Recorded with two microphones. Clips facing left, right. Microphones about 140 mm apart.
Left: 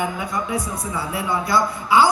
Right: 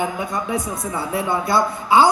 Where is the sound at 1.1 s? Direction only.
25° right (ahead or behind).